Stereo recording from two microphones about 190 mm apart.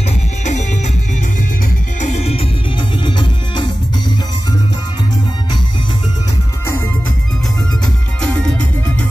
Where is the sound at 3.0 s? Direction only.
25° left (ahead or behind).